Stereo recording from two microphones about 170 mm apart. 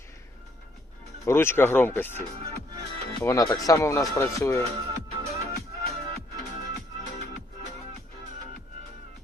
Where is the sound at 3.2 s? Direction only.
20° left (ahead or behind).